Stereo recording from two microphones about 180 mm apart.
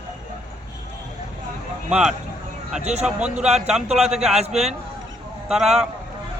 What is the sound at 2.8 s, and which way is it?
Speech, 40° right (ahead or behind).